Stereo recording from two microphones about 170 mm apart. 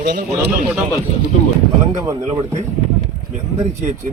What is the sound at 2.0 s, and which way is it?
Speech, 25° right (ahead or behind).